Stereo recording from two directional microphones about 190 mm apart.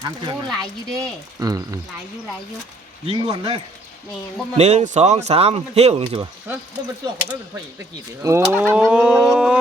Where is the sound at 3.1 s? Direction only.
25° right (ahead or behind).